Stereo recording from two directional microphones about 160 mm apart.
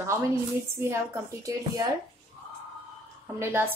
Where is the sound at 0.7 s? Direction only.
15° right (ahead or behind).